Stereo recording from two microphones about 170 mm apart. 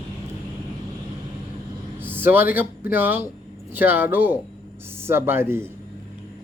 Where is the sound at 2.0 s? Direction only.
10° right (ahead or behind).